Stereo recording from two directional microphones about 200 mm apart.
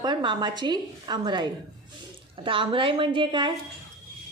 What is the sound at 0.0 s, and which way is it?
A woman's voice, 20° right (ahead or behind).